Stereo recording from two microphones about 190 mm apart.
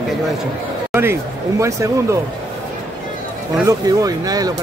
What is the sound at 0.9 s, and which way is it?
Speech, 10° right (ahead or behind).